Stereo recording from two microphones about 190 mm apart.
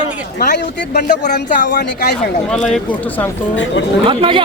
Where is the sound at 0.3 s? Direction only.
55° left (ahead or behind).